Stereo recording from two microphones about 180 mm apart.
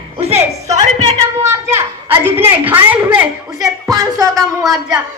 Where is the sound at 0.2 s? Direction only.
35° right (ahead or behind).